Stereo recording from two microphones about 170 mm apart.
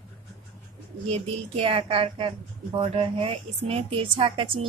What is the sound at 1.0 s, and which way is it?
A woman's voice, 35° right (ahead or behind).